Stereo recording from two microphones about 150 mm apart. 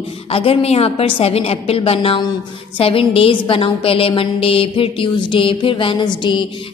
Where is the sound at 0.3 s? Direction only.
40° left (ahead or behind).